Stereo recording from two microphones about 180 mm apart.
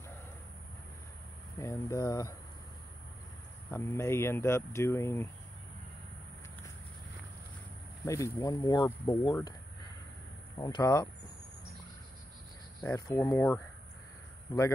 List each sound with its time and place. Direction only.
1.6 s speech: 15° left (ahead or behind)
3.7 s speech: 15° left (ahead or behind)
8.0 s speech: 15° left (ahead or behind)
10.6 s speech: 20° left (ahead or behind)
12.8 s speech: 15° left (ahead or behind)